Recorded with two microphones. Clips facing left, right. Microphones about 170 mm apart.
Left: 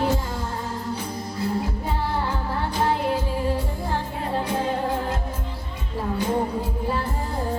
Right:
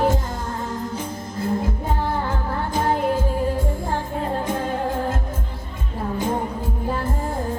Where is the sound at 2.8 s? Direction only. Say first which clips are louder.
Right 2 dB; 45° right (ahead or behind).